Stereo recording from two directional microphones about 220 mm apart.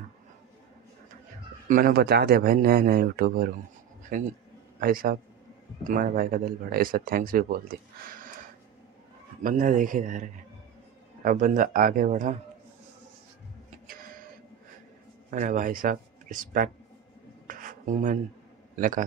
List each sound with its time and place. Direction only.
1.7 s a man's voice: 40° right (ahead or behind)
9.4 s speech: 35° right (ahead or behind)
13.8 s a sound: 40° right (ahead or behind)
15.3 s speech: 35° right (ahead or behind)
17.5 s a sound: 35° right (ahead or behind)
18.8 s speech: 35° right (ahead or behind)